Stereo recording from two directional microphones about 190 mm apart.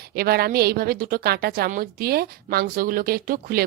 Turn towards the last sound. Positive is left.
turn(degrees=-50)  # may be behind; listen again after turning